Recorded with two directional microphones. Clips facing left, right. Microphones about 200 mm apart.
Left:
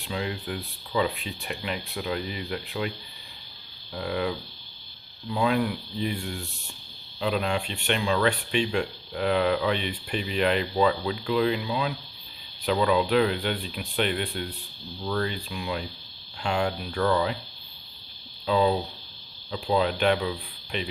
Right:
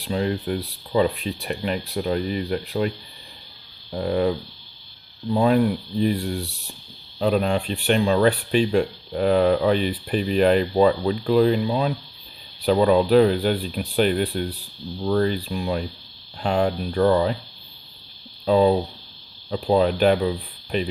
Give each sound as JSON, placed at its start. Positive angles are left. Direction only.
{"t": 0.0, "sound": "speech", "side_deg": -40}
{"t": 3.9, "sound": "speech", "side_deg": -40}
{"t": 18.4, "sound": "speech", "side_deg": -40}